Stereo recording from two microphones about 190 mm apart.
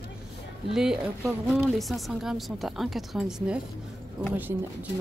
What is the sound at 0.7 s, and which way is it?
Speech, centre (ahead or behind).